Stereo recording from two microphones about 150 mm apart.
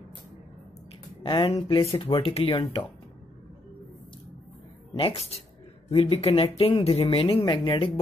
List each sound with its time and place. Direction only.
1.2 s speech: 35° left (ahead or behind)
4.9 s speech: 40° left (ahead or behind)